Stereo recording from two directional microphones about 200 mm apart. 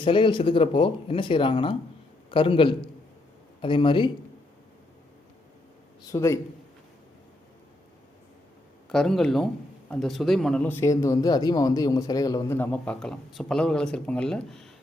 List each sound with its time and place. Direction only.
0.0 s speech: 25° left (ahead or behind)
6.1 s speech: 15° left (ahead or behind)
8.9 s speech: 5° left (ahead or behind)